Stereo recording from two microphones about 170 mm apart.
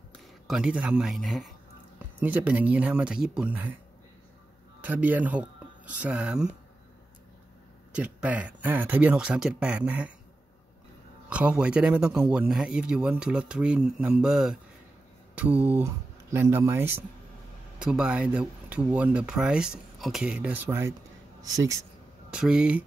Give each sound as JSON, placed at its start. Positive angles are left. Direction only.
{"t": 0.5, "sound": "speech", "side_deg": -5}
{"t": 4.8, "sound": "speech", "side_deg": -10}
{"t": 7.9, "sound": "speech", "side_deg": -10}
{"t": 11.2, "sound": "speech", "side_deg": -5}
{"t": 22.3, "sound": "speech", "side_deg": -5}